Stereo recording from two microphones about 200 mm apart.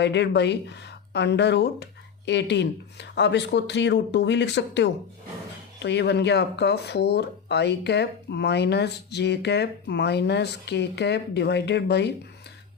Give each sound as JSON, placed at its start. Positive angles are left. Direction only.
{"t": 0.0, "sound": "speech", "side_deg": 60}